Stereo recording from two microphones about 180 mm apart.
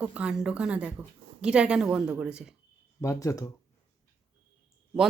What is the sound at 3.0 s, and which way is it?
Speech, 15° left (ahead or behind).